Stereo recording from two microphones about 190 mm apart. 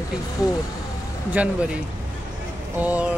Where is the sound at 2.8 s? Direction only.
5° right (ahead or behind).